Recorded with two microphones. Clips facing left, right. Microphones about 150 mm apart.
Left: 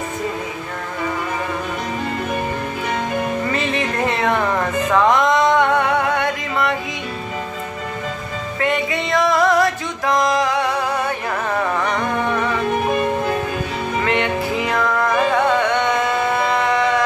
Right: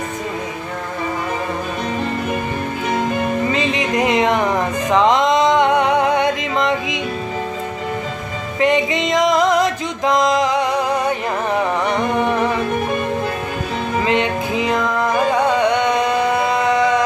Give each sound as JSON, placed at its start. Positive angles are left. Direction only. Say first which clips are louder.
{"t": 3.5, "sound": "music", "louder": "right 3 dB", "side_deg": -15}
{"t": 8.5, "sound": "music", "louder": "right 4 dB", "side_deg": -20}
{"t": 14.0, "sound": "music", "louder": "right 1 dB", "side_deg": -20}